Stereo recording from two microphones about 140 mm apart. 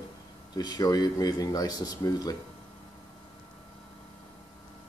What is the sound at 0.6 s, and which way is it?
Speech, 30° left (ahead or behind).